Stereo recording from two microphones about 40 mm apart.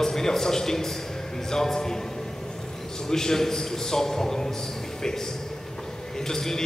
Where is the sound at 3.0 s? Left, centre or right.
Centre.